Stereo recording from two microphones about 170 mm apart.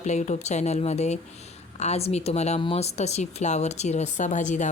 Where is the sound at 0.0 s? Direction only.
45° left (ahead or behind).